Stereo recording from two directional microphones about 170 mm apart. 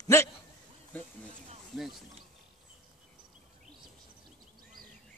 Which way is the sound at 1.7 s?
Centre (ahead or behind).